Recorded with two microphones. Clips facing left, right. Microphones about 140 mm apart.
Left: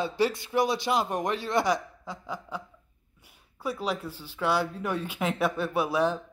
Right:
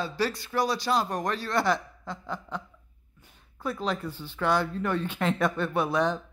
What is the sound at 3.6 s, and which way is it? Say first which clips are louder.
Speech: right 1 dB; 10° left (ahead or behind).